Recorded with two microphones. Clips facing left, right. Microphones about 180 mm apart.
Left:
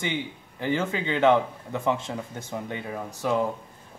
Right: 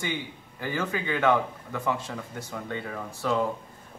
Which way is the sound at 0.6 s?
20° left (ahead or behind).